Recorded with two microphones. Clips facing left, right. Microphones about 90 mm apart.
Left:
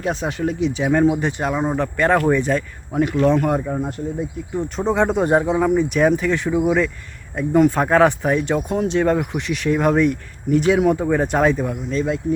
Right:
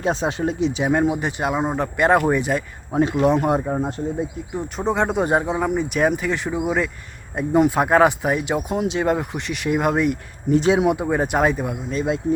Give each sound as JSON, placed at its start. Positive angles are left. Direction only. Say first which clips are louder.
{"t": 0.0, "sound": "speech", "louder": "right 1 dB", "side_deg": -25}
{"t": 1.1, "sound": "speech", "louder": "left 1 dB", "side_deg": -5}
{"t": 2.9, "sound": "speech", "louder": "left 1 dB", "side_deg": -25}
{"t": 4.5, "sound": "speech", "louder": "left 3 dB", "side_deg": 0}
{"t": 7.3, "sound": "speech", "louder": "left 2 dB", "side_deg": -20}
{"t": 7.7, "sound": "speech", "louder": "left 1 dB", "side_deg": -10}
{"t": 10.5, "sound": "speech", "louder": "left 1 dB", "side_deg": -25}
{"t": 10.9, "sound": "speech", "louder": "left 2 dB", "side_deg": -10}